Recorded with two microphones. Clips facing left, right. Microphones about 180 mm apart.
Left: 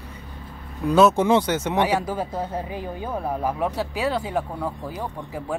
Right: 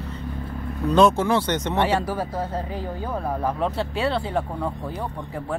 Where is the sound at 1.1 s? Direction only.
20° left (ahead or behind).